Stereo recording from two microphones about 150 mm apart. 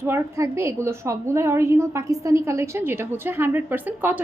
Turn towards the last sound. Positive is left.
turn(degrees=-10)  # may be behind; listen again after turning